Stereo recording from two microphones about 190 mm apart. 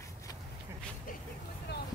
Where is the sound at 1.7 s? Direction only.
60° left (ahead or behind).